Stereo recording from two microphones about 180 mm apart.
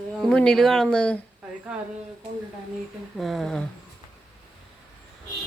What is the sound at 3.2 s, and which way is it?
Speech, centre (ahead or behind).